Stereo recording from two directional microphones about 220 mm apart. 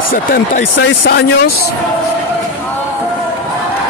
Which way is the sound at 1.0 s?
45° left (ahead or behind).